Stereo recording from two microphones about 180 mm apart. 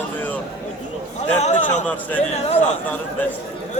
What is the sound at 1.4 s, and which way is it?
Speech, 40° left (ahead or behind).